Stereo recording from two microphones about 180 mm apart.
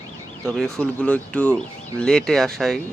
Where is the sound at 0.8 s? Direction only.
5° left (ahead or behind).